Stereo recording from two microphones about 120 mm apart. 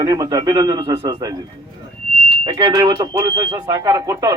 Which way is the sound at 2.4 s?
35° right (ahead or behind).